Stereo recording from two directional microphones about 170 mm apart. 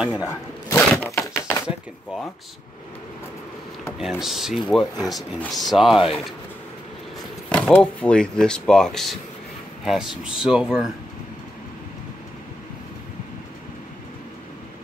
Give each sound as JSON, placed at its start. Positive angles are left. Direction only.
{"t": 0.1, "sound": "a sound", "side_deg": 20}
{"t": 4.0, "sound": "speech", "side_deg": 0}
{"t": 7.4, "sound": "speech", "side_deg": 5}